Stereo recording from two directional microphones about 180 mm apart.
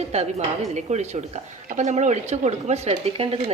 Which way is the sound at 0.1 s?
35° right (ahead or behind).